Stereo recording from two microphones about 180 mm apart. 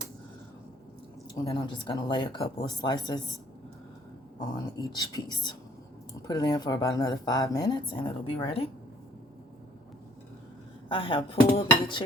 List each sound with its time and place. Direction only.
1.4 s speech: 25° left (ahead or behind)
4.4 s speech: 20° left (ahead or behind)
10.8 s speech: 30° left (ahead or behind)